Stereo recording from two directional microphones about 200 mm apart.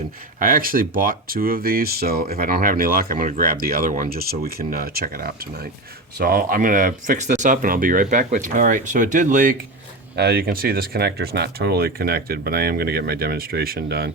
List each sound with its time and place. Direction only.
0.3 s speech: 45° right (ahead or behind)
10.2 s speech: 55° right (ahead or behind)